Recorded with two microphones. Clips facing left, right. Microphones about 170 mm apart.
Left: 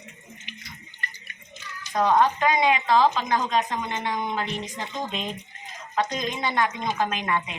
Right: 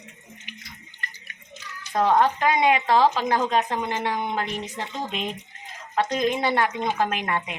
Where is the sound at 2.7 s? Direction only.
60° right (ahead or behind).